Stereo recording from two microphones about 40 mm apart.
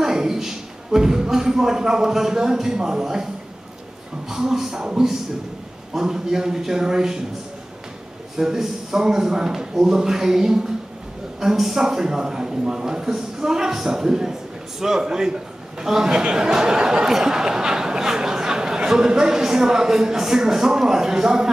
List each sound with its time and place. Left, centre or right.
0.0 s a man's voice: centre
4.3 s speech: centre
5.9 s speech: centre
8.4 s speech: centre